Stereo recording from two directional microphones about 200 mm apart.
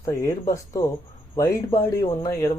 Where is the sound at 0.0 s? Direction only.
15° left (ahead or behind).